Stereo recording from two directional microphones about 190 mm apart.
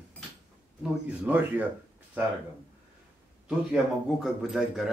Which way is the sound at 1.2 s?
10° right (ahead or behind).